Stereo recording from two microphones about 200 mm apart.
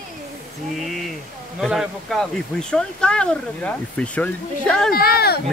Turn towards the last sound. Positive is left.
turn(degrees=50)  # may be behind; listen again after turning